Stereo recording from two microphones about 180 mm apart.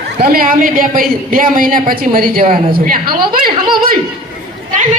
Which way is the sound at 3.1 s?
25° right (ahead or behind).